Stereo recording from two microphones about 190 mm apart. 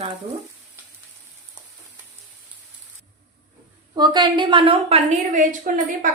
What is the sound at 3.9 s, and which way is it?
A woman's voice, 20° right (ahead or behind).